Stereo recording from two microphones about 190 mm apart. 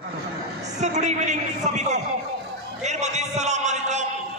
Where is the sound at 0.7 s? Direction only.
40° right (ahead or behind).